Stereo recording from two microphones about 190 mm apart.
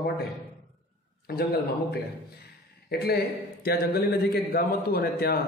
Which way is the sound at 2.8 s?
55° left (ahead or behind).